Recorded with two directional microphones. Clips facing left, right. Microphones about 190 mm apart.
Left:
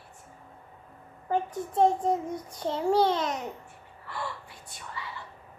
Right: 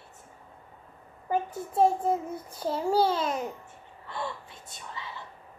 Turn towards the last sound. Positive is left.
turn(degrees=-20)  # may be behind; listen again after turning